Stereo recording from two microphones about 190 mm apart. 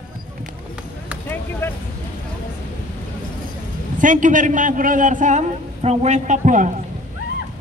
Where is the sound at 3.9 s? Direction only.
45° right (ahead or behind).